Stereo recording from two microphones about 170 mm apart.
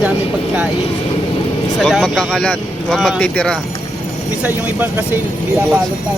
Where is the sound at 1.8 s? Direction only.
Centre (ahead or behind).